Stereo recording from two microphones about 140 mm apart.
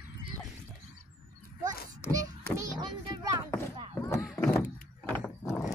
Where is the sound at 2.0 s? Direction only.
25° right (ahead or behind).